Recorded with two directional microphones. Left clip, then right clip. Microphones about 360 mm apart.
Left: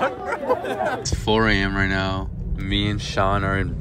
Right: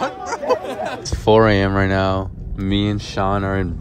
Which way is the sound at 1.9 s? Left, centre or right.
Right.